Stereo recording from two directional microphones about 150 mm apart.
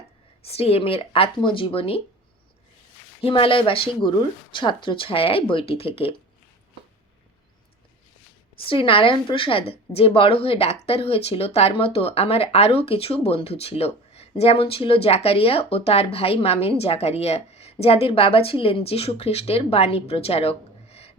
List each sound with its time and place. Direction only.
0.4 s a woman's voice: 40° left (ahead or behind)
3.2 s a woman's voice: 35° left (ahead or behind)
8.6 s a woman's voice: 35° left (ahead or behind)